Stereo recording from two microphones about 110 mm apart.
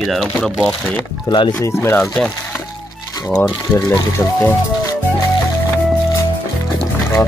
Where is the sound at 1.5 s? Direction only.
25° left (ahead or behind).